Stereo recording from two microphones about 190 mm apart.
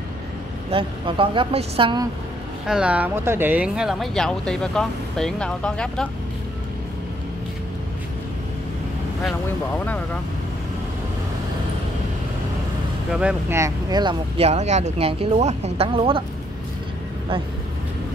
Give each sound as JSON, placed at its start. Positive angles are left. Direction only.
{"t": 0.7, "sound": "speech", "side_deg": -30}
{"t": 2.6, "sound": "speech", "side_deg": -5}
{"t": 13.1, "sound": "speech", "side_deg": -5}